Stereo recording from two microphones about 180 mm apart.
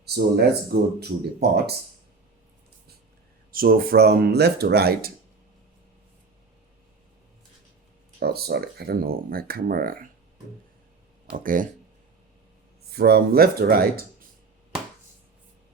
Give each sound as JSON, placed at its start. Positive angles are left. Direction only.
{"t": 0.0, "sound": "speech", "side_deg": -65}
{"t": 3.5, "sound": "speech", "side_deg": -50}
{"t": 8.2, "sound": "speech", "side_deg": -60}
{"t": 11.3, "sound": "speech", "side_deg": -50}
{"t": 12.9, "sound": "speech", "side_deg": -60}